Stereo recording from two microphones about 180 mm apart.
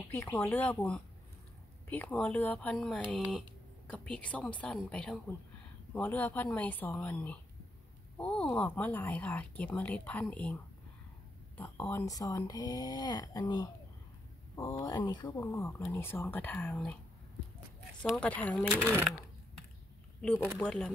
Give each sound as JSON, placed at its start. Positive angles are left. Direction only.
{"t": 0.1, "sound": "speech", "side_deg": 10}
{"t": 15.4, "sound": "speech", "side_deg": 10}
{"t": 18.0, "sound": "speech", "side_deg": 5}
{"t": 20.5, "sound": "speech", "side_deg": 5}